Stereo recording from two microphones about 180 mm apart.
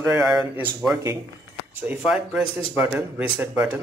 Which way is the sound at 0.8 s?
15° right (ahead or behind).